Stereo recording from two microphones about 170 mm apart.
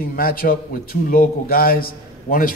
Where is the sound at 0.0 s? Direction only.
60° left (ahead or behind).